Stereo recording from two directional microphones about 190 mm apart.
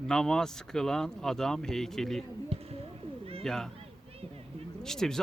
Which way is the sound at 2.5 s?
30° right (ahead or behind).